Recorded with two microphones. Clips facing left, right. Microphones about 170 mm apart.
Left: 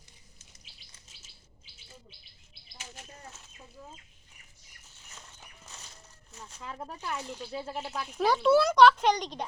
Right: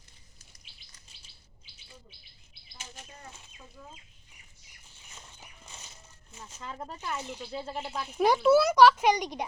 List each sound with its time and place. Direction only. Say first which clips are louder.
2.7 s bird: even; 20° right (ahead or behind)
3.2 s chicken: even; centre (ahead or behind)
5.1 s a sound: right 1 dB; centre (ahead or behind)
7.6 s speech: even; 5° left (ahead or behind)